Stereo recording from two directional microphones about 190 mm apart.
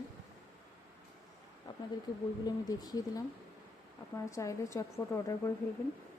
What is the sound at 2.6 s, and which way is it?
Speech, 20° left (ahead or behind).